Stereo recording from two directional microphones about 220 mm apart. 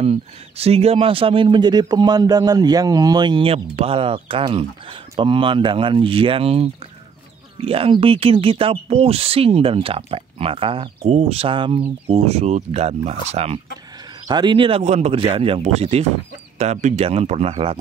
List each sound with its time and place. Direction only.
0.0 s speech: 25° right (ahead or behind)